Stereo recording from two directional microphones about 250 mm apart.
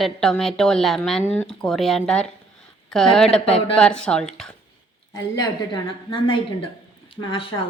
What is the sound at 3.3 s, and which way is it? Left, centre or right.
Speech, left.